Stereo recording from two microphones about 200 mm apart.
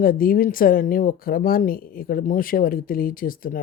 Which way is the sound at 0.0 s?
45° left (ahead or behind).